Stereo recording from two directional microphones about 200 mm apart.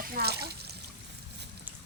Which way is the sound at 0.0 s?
50° right (ahead or behind).